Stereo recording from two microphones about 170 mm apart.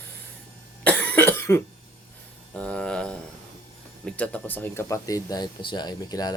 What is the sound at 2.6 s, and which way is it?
Speech, 5° left (ahead or behind).